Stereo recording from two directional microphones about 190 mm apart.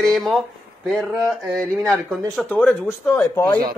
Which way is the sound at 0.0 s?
Centre (ahead or behind).